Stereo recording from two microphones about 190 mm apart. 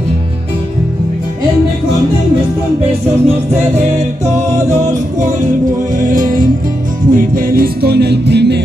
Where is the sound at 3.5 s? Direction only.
35° right (ahead or behind).